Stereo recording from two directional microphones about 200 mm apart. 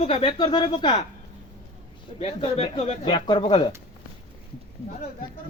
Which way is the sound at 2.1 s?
30° left (ahead or behind).